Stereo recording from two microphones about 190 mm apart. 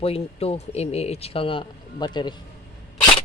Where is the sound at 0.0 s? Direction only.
30° left (ahead or behind).